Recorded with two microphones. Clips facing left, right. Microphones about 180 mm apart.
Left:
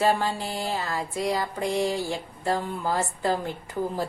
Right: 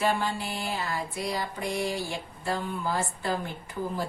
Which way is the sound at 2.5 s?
40° left (ahead or behind).